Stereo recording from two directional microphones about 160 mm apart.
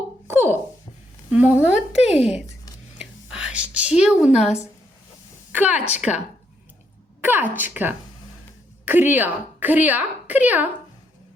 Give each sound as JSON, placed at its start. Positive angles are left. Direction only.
{"t": 0.3, "sound": "a sound", "side_deg": -15}
{"t": 1.3, "sound": "a woman's voice", "side_deg": -10}
{"t": 2.1, "sound": "a child's voice", "side_deg": 40}
{"t": 3.0, "sound": "whispering", "side_deg": -5}
{"t": 4.0, "sound": "a woman's voice", "side_deg": -5}
{"t": 5.5, "sound": "a sound", "side_deg": -10}
{"t": 6.0, "sound": "a woman's voice", "side_deg": 0}